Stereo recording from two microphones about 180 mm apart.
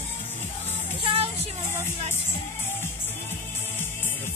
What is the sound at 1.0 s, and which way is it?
Vehicle, 30° right (ahead or behind).